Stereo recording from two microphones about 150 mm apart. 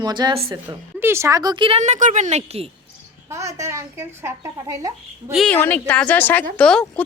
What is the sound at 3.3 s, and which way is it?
Speech, 20° right (ahead or behind).